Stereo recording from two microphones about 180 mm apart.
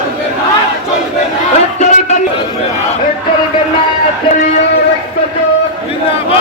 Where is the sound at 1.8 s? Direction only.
40° left (ahead or behind).